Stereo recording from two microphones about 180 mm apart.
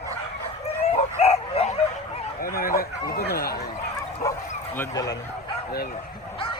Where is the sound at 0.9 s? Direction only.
35° left (ahead or behind).